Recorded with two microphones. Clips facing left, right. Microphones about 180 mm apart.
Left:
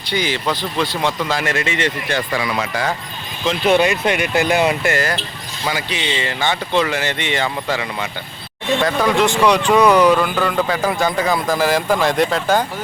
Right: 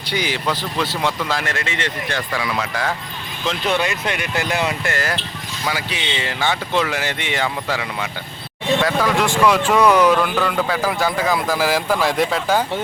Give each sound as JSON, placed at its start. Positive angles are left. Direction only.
{"t": 0.1, "sound": "speech", "side_deg": -10}
{"t": 1.3, "sound": "speech", "side_deg": 5}
{"t": 3.7, "sound": "speech", "side_deg": 15}
{"t": 4.9, "sound": "speech", "side_deg": 0}